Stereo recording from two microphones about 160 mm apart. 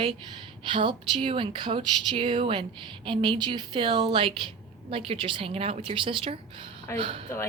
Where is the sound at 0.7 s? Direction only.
30° right (ahead or behind).